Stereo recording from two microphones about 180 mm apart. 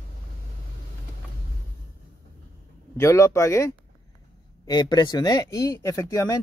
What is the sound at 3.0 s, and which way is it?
Speech, 15° left (ahead or behind).